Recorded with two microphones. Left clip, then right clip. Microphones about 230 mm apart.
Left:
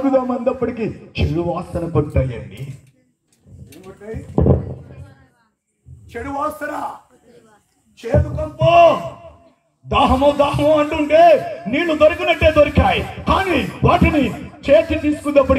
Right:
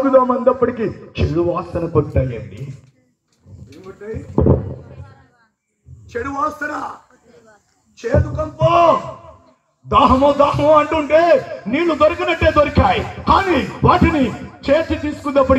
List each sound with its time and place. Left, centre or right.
0.0 s a man's voice: left
6.0 s a man's voice: left
8.0 s a man's voice: left